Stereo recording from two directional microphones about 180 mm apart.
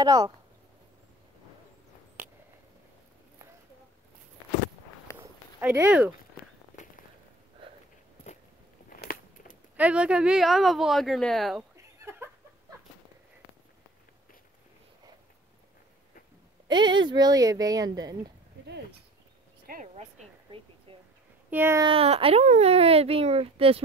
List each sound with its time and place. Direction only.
0.0 s speech: 20° right (ahead or behind)
5.1 s a sound: 10° right (ahead or behind)
9.0 s a sound: 50° left (ahead or behind)
9.8 s a woman's voice: 5° right (ahead or behind)
11.7 s chuckle: 15° right (ahead or behind)
16.6 s speech: 25° right (ahead or behind)
19.6 s a sound: 50° right (ahead or behind)
21.5 s speech: 10° right (ahead or behind)
21.8 s speech: 30° right (ahead or behind)